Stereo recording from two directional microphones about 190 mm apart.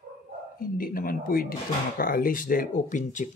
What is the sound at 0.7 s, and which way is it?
Speech, 50° left (ahead or behind).